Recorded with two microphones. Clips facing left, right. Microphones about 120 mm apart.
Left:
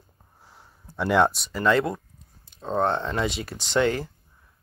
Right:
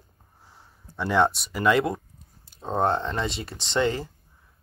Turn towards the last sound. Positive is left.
turn(degrees=0)  # may be behind; listen again after turning